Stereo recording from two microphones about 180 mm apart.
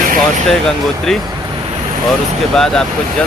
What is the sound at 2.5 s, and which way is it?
Speech, centre (ahead or behind).